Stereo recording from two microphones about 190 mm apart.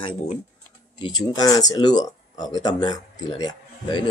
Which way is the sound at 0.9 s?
25° left (ahead or behind).